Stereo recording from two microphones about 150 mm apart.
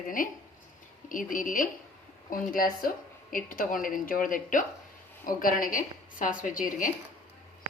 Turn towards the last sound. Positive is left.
turn(degrees=60)  # may be behind; listen again after turning